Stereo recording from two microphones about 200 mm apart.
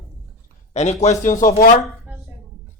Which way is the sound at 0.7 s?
35° left (ahead or behind).